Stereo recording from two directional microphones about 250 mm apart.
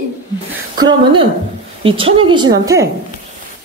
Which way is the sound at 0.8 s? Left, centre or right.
Centre.